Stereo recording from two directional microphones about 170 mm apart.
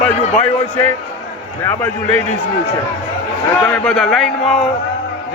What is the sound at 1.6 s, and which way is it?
Speech, 15° left (ahead or behind).